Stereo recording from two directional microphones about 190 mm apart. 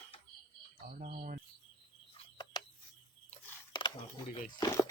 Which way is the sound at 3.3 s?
25° left (ahead or behind).